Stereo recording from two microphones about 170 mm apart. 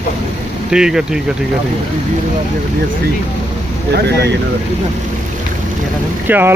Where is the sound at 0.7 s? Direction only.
5° right (ahead or behind).